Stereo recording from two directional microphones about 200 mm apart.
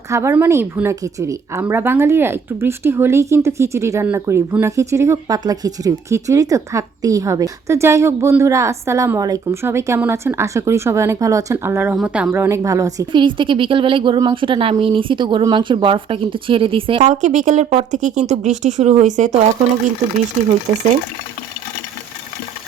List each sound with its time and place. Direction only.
0.1 s a woman's voice: 15° right (ahead or behind); by 19.5 s 35° right (ahead or behind)